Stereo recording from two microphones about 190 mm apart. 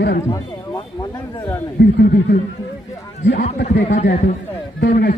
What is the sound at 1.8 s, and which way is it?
Speech, 60° left (ahead or behind).